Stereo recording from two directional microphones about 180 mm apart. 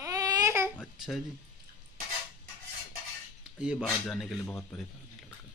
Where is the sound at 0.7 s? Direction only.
Centre (ahead or behind).